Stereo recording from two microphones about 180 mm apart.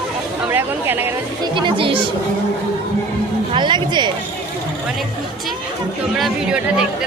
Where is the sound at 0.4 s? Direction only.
10° right (ahead or behind).